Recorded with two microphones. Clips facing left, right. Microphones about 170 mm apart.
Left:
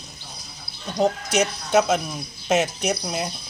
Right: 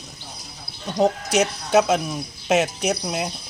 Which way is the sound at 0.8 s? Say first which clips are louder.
Right 2 dB; 15° right (ahead or behind).